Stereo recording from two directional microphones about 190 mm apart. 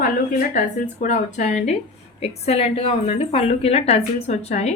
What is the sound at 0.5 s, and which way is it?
A woman's voice, 40° left (ahead or behind).